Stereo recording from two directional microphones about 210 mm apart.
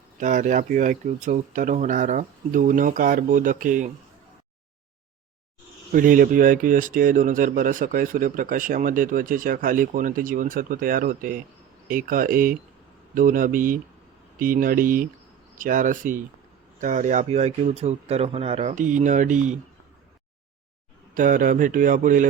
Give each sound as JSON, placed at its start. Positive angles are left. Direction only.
{"t": 0.2, "sound": "speech", "side_deg": -35}
{"t": 5.9, "sound": "speech", "side_deg": -40}
{"t": 21.2, "sound": "speech", "side_deg": -40}